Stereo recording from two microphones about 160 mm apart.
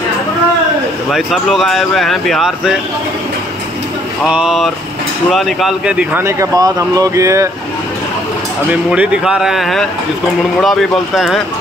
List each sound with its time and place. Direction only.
1.1 s speech: centre (ahead or behind)
4.3 s speech: 5° right (ahead or behind)
6.2 s speech: 20° right (ahead or behind)
8.6 s speech: 10° right (ahead or behind)